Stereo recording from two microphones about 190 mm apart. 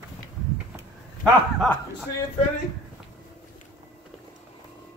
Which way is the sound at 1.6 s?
Centre (ahead or behind).